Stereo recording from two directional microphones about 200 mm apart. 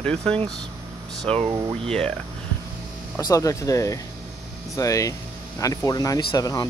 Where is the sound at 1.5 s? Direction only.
15° right (ahead or behind).